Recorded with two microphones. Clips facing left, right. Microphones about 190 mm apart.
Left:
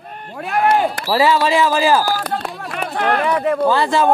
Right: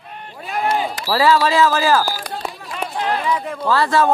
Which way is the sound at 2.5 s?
60° left (ahead or behind).